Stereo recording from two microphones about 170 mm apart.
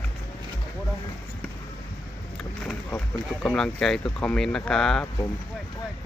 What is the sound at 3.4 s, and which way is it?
Speech, 5° left (ahead or behind).